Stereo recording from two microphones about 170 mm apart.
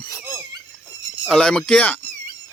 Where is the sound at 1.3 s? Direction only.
5° left (ahead or behind).